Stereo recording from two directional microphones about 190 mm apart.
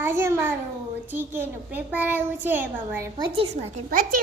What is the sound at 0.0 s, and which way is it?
A child's voice, 15° right (ahead or behind).